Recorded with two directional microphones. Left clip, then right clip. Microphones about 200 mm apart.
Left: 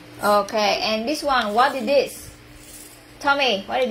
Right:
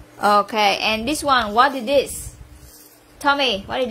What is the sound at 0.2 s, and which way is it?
A woman's voice, 45° right (ahead or behind).